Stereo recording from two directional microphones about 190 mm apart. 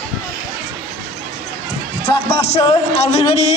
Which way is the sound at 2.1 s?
30° left (ahead or behind).